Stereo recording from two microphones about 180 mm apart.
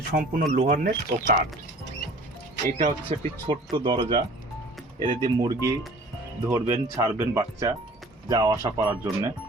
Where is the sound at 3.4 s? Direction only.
25° right (ahead or behind).